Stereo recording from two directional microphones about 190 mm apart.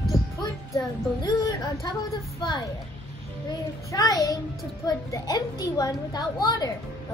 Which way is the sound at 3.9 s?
15° left (ahead or behind).